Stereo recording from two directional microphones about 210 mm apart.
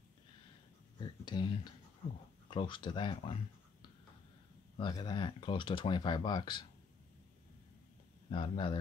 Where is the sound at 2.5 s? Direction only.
20° left (ahead or behind).